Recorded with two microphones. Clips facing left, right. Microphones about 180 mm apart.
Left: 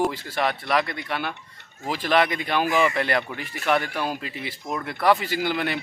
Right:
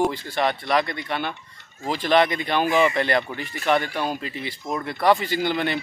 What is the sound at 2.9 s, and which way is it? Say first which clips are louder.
A man's voice: right 2 dB; 5° left (ahead or behind).